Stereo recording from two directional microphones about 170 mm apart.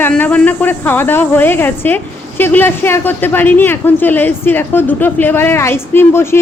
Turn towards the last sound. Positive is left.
turn(degrees=15)  # may be behind; listen again after turning